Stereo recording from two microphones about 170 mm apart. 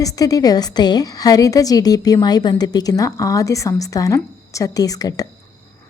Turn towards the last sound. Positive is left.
turn(degrees=20)  # may be behind; listen again after turning